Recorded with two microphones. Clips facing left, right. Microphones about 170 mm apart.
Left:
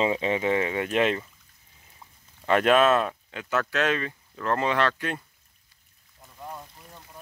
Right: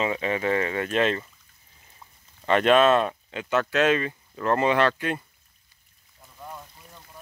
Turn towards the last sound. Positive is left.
turn(degrees=15)  # may be behind; listen again after turning